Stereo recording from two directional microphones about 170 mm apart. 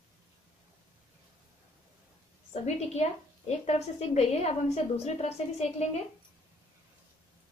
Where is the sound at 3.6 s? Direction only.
40° left (ahead or behind).